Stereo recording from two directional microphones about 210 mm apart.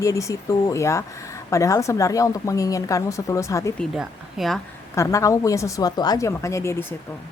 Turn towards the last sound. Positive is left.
turn(degrees=15)  # may be behind; listen again after turning